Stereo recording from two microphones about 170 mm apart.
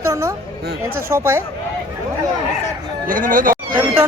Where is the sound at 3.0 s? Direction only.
55° right (ahead or behind).